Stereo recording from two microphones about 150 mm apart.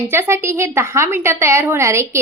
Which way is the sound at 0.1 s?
15° right (ahead or behind).